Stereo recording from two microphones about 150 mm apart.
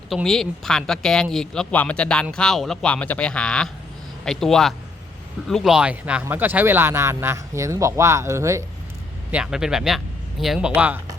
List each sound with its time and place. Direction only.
0.1 s speech: centre (ahead or behind); by 8.6 s 20° right (ahead or behind)
9.3 s speech: 5° right (ahead or behind)